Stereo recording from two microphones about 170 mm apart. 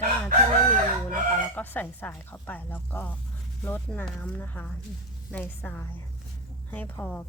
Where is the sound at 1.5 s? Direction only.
10° left (ahead or behind).